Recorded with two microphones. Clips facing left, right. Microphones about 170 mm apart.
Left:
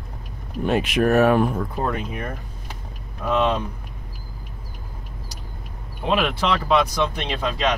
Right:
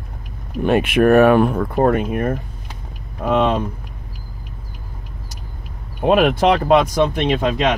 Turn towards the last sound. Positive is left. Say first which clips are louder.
# right 6 dB
turn(degrees=-50)  # may be behind; listen again after turning